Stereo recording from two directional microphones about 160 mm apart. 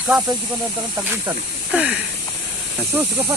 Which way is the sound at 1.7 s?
10° right (ahead or behind).